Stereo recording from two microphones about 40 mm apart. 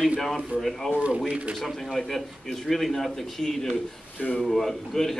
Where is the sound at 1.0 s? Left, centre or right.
Right.